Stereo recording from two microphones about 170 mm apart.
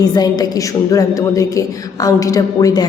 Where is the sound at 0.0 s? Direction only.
25° left (ahead or behind).